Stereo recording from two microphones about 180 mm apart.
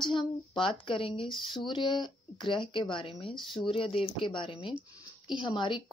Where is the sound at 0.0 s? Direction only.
25° left (ahead or behind).